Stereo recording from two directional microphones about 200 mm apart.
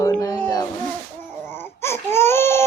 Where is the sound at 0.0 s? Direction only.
15° left (ahead or behind).